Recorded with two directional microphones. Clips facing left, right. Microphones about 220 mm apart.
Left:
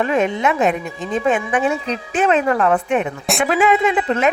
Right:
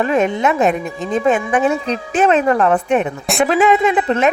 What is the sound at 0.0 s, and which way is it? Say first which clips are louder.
A woman's voice: right 2 dB; 40° right (ahead or behind).